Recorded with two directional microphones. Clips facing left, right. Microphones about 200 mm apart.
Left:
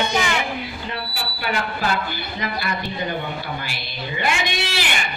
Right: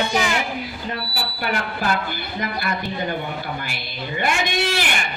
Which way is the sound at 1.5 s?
50° right (ahead or behind).